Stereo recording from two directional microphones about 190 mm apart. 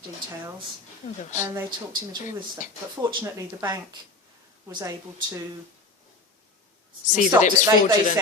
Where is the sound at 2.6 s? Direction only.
40° left (ahead or behind).